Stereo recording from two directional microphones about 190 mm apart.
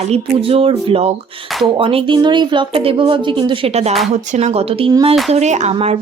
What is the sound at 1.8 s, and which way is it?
Speech, 30° right (ahead or behind).